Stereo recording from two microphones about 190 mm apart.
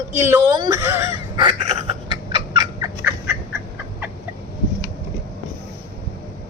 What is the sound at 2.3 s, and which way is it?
Fowl, 25° right (ahead or behind).